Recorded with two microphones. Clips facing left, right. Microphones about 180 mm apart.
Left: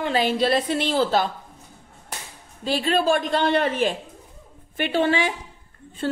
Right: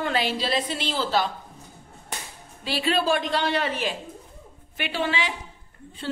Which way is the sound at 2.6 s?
45° left (ahead or behind).